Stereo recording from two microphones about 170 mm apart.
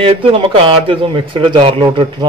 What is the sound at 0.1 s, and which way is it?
Speech, 30° right (ahead or behind).